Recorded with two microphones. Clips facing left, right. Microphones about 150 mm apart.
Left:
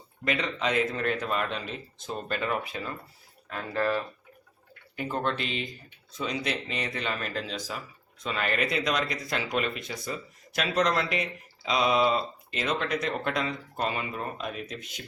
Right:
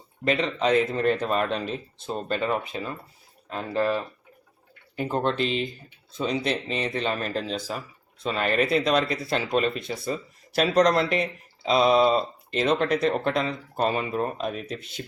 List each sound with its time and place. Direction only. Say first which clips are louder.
0.3 s speech: right 6 dB; 30° right (ahead or behind)